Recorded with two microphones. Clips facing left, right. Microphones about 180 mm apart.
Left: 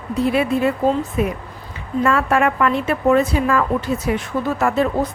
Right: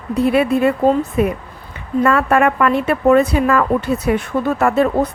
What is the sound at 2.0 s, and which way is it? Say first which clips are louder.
Speech: right 3 dB; 55° right (ahead or behind).